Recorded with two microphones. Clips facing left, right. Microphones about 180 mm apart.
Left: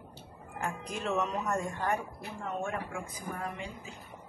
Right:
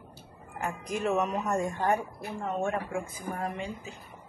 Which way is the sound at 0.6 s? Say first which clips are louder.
Right 5 dB; 10° right (ahead or behind).